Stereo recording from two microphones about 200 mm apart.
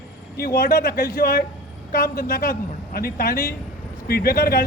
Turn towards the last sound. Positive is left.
turn(degrees=50)  # may be behind; listen again after turning